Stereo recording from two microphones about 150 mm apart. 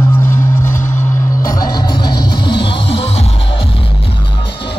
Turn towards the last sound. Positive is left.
turn(degrees=40)  # may be behind; listen again after turning